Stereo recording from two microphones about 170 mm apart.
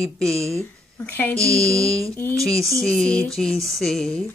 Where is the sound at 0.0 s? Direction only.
Centre (ahead or behind).